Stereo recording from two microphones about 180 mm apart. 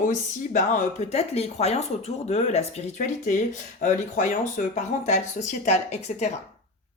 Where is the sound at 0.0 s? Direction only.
45° left (ahead or behind).